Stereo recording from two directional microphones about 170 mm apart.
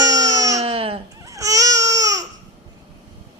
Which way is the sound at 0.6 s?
35° right (ahead or behind).